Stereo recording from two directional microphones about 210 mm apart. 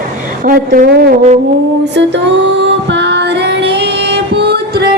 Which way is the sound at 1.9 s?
55° right (ahead or behind).